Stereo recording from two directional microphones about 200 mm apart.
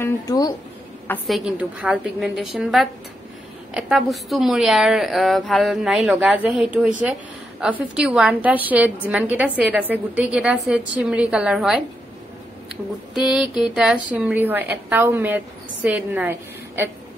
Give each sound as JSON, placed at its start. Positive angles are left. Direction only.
{"t": 0.0, "sound": "speech", "side_deg": 15}
{"t": 1.0, "sound": "a woman's voice", "side_deg": 5}